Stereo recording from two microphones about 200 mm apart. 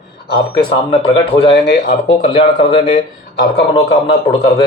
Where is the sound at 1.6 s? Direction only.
55° left (ahead or behind).